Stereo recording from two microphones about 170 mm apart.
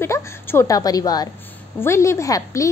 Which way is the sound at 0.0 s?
15° left (ahead or behind).